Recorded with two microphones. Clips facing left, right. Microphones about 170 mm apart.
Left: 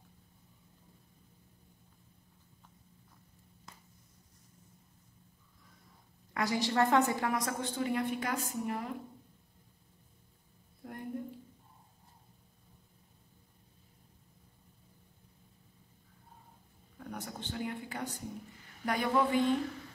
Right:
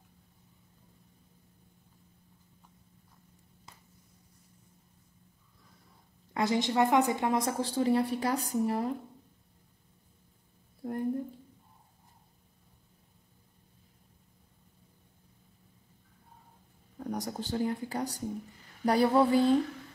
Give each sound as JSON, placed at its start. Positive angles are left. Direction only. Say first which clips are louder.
{"t": 6.3, "sound": "a woman's voice", "louder": "right 3 dB", "side_deg": -25}
{"t": 10.8, "sound": "a sound", "louder": "right 10 dB", "side_deg": -35}
{"t": 17.0, "sound": "a woman's voice", "louder": "right 7 dB", "side_deg": -35}